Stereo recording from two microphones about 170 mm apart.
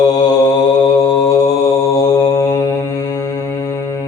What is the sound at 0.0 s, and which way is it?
Mantra, 20° left (ahead or behind).